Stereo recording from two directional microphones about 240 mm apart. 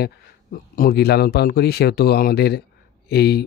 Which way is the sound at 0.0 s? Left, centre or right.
Left.